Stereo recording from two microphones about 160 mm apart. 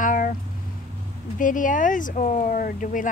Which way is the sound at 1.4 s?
55° left (ahead or behind).